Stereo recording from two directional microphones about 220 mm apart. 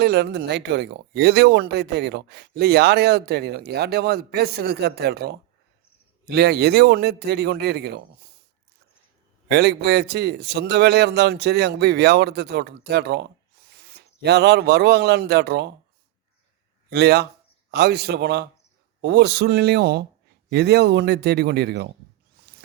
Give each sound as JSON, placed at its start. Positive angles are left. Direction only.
{"t": 0.0, "sound": "speech", "side_deg": -45}
{"t": 9.5, "sound": "speech", "side_deg": -50}
{"t": 13.7, "sound": "owl", "side_deg": -45}
{"t": 14.2, "sound": "speech", "side_deg": -50}
{"t": 16.9, "sound": "speech", "side_deg": -50}